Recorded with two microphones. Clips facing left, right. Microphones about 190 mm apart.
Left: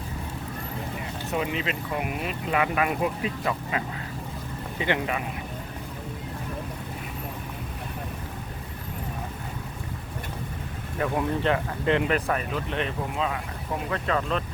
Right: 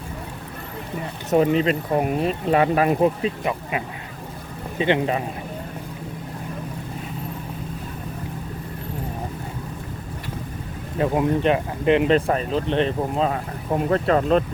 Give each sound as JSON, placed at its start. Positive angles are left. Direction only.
{"t": 1.3, "sound": "speech", "side_deg": -40}
{"t": 10.9, "sound": "speech", "side_deg": -25}